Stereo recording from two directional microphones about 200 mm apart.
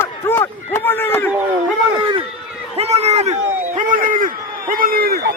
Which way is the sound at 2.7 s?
30° right (ahead or behind).